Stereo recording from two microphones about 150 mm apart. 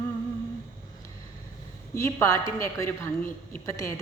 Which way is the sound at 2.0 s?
20° left (ahead or behind).